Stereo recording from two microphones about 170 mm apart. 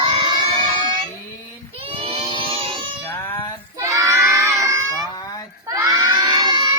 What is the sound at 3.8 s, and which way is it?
Crowd, 20° right (ahead or behind).